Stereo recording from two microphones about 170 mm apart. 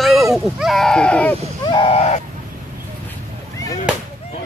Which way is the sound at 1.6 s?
30° left (ahead or behind).